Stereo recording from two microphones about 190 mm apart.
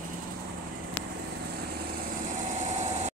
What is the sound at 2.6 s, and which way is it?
Vehicle, 35° right (ahead or behind).